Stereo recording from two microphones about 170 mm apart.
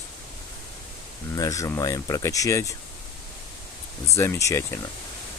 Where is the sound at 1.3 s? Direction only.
20° left (ahead or behind).